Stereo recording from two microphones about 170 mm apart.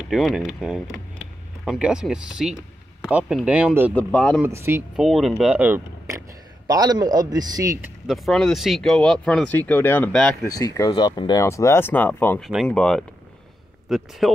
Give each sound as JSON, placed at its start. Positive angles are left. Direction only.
{"t": 0.1, "sound": "speech", "side_deg": 0}
{"t": 3.9, "sound": "speech", "side_deg": 5}
{"t": 4.4, "sound": "speech", "side_deg": -15}
{"t": 4.9, "sound": "a man's voice", "side_deg": 0}
{"t": 8.1, "sound": "speech", "side_deg": 5}
{"t": 10.4, "sound": "speech", "side_deg": 20}